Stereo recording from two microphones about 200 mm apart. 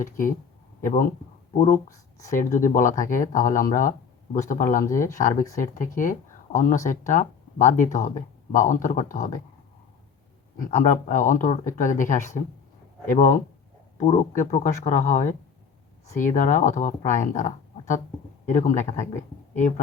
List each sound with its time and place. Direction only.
0.0 s speech: 40° left (ahead or behind)
1.9 s speech: 15° left (ahead or behind)
2.6 s speech: 40° left (ahead or behind)
10.6 s speech: 40° left (ahead or behind)